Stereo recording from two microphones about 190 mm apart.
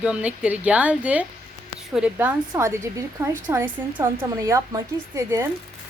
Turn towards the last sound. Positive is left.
turn(degrees=-15)  # may be behind; listen again after turning